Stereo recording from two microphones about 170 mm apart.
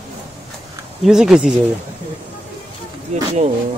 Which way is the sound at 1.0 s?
5° right (ahead or behind).